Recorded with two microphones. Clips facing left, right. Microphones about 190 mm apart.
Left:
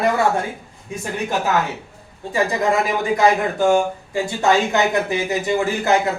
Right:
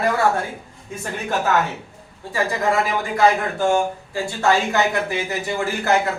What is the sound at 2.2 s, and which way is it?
Speech, 20° left (ahead or behind).